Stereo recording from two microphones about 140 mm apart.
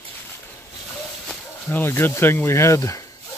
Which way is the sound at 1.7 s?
15° left (ahead or behind).